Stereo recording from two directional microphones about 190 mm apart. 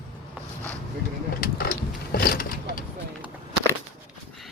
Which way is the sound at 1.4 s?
50° left (ahead or behind).